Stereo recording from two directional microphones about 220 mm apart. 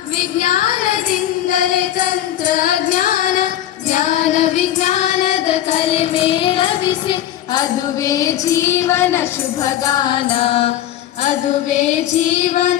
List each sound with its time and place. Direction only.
0.3 s child singing: 35° left (ahead or behind)
1.5 s music: 35° left (ahead or behind)
3.8 s child singing: 35° left (ahead or behind)
12.4 s child singing: 35° left (ahead or behind)